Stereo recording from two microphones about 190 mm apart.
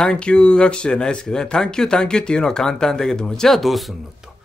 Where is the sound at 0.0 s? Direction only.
5° left (ahead or behind).